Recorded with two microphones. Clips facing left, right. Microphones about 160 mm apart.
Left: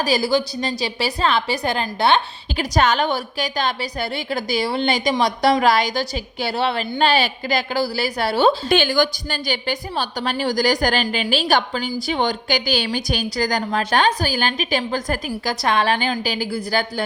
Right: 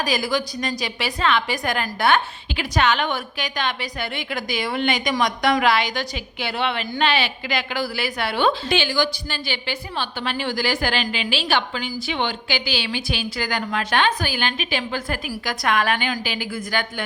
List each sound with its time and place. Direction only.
0.0 s a woman's voice: 35° left (ahead or behind)
2.6 s a woman's voice: 40° left (ahead or behind)